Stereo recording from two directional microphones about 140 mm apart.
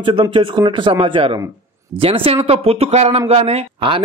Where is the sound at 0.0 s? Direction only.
35° right (ahead or behind).